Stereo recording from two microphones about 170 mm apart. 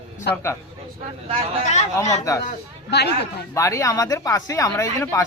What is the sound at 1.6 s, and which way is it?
Speech, 45° left (ahead or behind).